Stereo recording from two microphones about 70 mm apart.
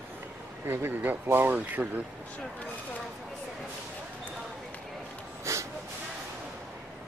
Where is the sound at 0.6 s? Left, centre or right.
Right.